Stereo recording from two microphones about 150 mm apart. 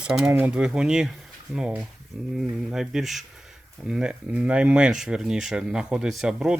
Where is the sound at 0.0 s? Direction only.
5° right (ahead or behind).